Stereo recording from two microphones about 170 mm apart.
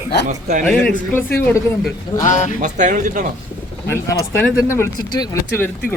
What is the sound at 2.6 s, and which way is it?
Speech, 45° right (ahead or behind).